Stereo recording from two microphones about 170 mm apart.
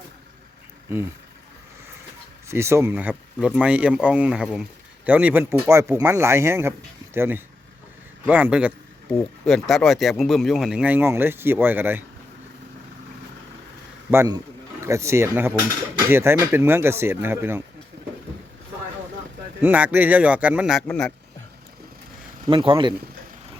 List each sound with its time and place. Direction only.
2.5 s speech: 15° right (ahead or behind)
14.1 s speech: 15° right (ahead or behind)
19.6 s speech: 10° right (ahead or behind)
22.4 s speech: 30° right (ahead or behind)